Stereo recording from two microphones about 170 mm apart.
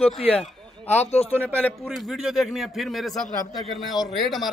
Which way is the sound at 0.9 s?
40° left (ahead or behind).